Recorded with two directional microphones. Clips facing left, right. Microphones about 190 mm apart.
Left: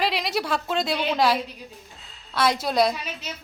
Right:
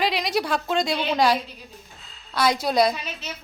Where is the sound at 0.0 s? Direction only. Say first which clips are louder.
Right 2 dB; centre (ahead or behind).